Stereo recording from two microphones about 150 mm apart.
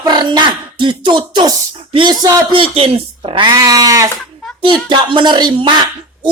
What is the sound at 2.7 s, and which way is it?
Speech, 40° right (ahead or behind).